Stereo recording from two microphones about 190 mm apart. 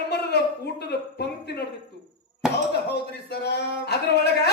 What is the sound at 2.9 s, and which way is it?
Speech, 60° left (ahead or behind).